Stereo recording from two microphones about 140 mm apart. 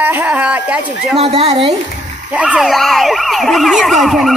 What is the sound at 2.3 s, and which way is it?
Speech, 5° right (ahead or behind).